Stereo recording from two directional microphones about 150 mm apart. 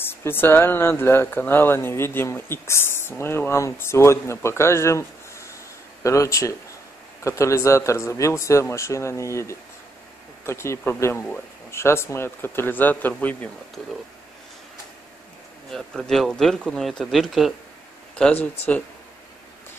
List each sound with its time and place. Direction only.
0.0 s speech: 15° left (ahead or behind)
15.7 s speech: centre (ahead or behind)